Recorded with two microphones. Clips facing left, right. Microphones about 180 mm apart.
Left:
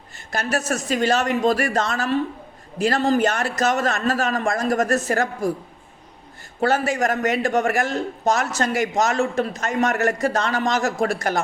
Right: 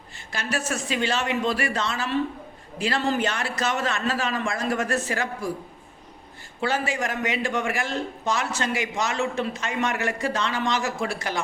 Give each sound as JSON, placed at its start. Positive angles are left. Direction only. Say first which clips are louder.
{"t": 0.3, "sound": "a man's voice", "louder": "left 5 dB", "side_deg": 45}
{"t": 6.6, "sound": "a man's voice", "louder": "left 6 dB", "side_deg": 45}